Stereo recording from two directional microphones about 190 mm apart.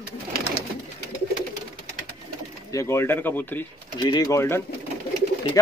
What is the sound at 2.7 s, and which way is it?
Speech, 15° left (ahead or behind).